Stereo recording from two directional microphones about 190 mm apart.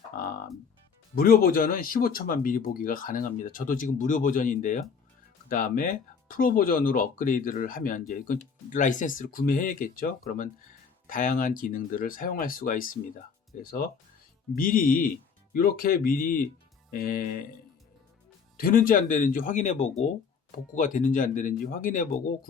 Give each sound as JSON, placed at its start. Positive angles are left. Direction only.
{"t": 1.1, "sound": "speech", "side_deg": 50}
{"t": 18.5, "sound": "speech", "side_deg": 50}